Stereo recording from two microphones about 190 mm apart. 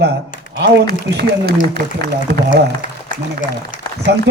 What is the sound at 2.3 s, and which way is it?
Speech, 55° right (ahead or behind).